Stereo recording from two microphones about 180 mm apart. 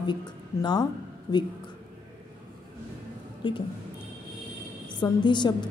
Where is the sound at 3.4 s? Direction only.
30° left (ahead or behind).